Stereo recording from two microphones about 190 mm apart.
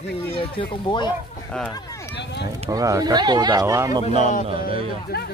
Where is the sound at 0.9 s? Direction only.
25° left (ahead or behind).